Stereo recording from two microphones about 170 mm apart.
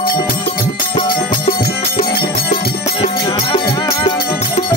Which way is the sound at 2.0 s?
60° left (ahead or behind).